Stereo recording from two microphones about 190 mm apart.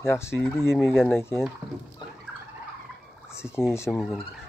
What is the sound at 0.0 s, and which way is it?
Speech, 15° left (ahead or behind).